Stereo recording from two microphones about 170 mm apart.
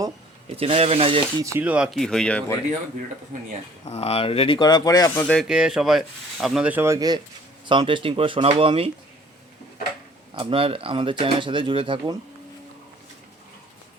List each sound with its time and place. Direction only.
0.5 s speech: 35° right (ahead or behind)
1.4 s speech: 15° right (ahead or behind); by 2.4 s 5° left (ahead or behind)
3.3 s speech: 50° right (ahead or behind)
3.8 s speech: 35° left (ahead or behind); by 5.2 s 20° left (ahead or behind)
5.2 s speech: 5° left (ahead or behind)
5.5 s speech: 5° right (ahead or behind); by 8.9 s 35° right (ahead or behind)
10.3 s speech: 30° right (ahead or behind)